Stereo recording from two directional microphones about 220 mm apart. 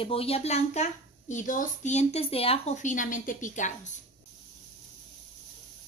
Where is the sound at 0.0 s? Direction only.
25° left (ahead or behind).